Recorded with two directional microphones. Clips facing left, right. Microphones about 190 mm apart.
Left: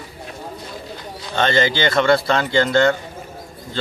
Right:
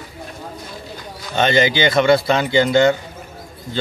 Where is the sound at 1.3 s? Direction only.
15° right (ahead or behind).